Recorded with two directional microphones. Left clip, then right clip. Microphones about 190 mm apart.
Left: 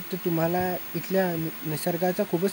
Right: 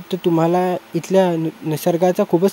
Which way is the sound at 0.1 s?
40° right (ahead or behind).